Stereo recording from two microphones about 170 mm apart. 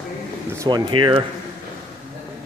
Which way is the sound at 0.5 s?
25° right (ahead or behind).